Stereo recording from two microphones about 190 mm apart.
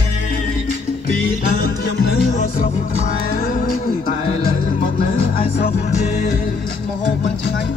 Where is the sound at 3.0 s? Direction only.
45° left (ahead or behind).